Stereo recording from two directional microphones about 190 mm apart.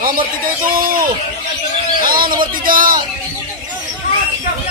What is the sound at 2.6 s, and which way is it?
Speech, 45° right (ahead or behind).